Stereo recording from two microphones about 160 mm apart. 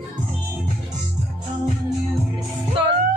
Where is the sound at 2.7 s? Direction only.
30° right (ahead or behind).